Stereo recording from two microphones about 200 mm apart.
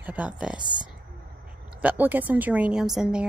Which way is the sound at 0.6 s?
20° right (ahead or behind).